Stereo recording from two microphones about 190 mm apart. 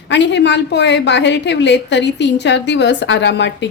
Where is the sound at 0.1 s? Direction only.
70° left (ahead or behind).